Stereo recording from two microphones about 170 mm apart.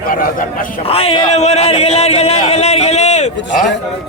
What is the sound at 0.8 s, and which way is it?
Speech, 35° left (ahead or behind).